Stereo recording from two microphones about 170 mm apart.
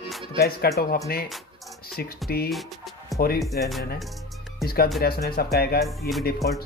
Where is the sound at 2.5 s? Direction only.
Centre (ahead or behind).